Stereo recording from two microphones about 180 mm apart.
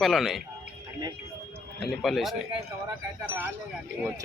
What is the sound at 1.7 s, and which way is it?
Speech, centre (ahead or behind).